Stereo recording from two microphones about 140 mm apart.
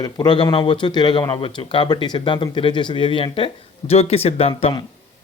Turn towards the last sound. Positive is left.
turn(degrees=45)  # may be behind; listen again after turning